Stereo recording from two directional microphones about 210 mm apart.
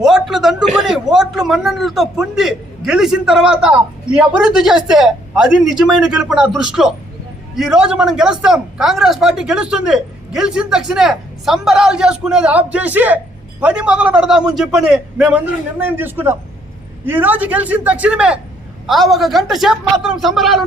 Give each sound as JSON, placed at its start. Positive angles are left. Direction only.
{"t": 0.0, "sound": "a man's voice", "side_deg": 0}